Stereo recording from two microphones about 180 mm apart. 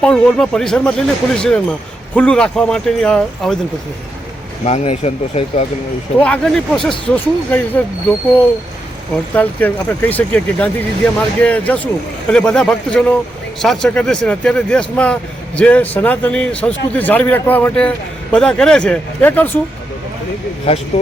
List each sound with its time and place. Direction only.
0.0 s speech: 5° left (ahead or behind)
4.6 s speech: 35° left (ahead or behind)
6.1 s speech: 5° left (ahead or behind)
9.3 s speech: 10° left (ahead or behind)
20.9 s speech: 35° left (ahead or behind)